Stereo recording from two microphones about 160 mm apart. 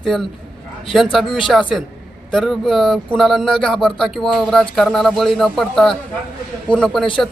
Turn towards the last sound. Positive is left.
turn(degrees=5)  # may be behind; listen again after turning